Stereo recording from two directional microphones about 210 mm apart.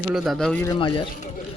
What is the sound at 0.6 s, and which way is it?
Speech, 20° left (ahead or behind).